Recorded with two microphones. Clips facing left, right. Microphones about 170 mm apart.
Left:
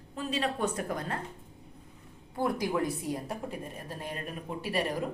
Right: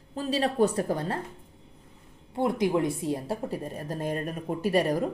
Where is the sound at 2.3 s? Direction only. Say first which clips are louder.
Right 5 dB; 25° right (ahead or behind).